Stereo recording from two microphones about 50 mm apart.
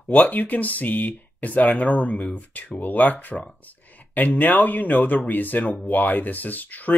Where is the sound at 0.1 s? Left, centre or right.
Left.